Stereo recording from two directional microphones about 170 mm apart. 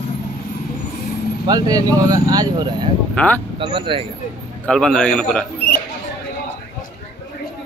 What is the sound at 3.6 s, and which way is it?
Speech, 30° right (ahead or behind).